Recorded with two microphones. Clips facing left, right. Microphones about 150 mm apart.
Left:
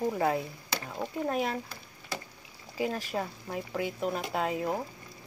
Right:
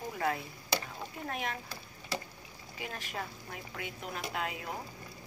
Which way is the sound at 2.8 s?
35° left (ahead or behind).